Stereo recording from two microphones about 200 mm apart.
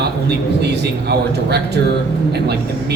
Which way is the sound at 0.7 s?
55° right (ahead or behind).